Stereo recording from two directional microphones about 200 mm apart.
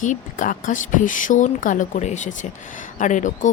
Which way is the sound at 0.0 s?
40° left (ahead or behind).